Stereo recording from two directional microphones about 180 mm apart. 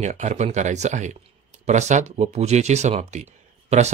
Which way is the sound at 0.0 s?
40° right (ahead or behind).